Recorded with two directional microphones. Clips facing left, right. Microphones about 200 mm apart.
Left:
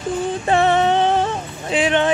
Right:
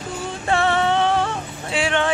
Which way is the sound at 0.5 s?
20° left (ahead or behind).